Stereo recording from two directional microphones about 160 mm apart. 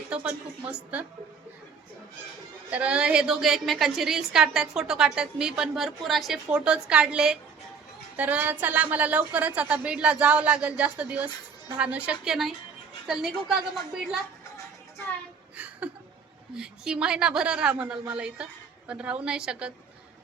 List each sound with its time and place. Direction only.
0.1 s a woman's voice: 5° right (ahead or behind)
2.6 s a woman's voice: 10° right (ahead or behind)
13.7 s a woman's voice: centre (ahead or behind)
15.5 s a sound: 10° right (ahead or behind)
16.6 s a woman's voice: 5° right (ahead or behind)